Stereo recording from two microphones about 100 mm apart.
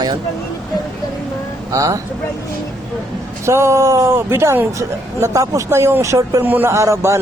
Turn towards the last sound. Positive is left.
turn(degrees=-30)  # may be behind; listen again after turning